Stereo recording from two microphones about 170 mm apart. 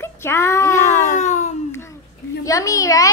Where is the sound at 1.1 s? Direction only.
45° left (ahead or behind).